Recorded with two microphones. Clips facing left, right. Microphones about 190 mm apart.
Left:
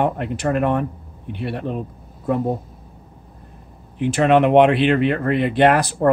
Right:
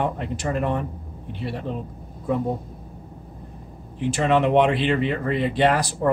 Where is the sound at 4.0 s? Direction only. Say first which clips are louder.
Left 5 dB; 60° left (ahead or behind).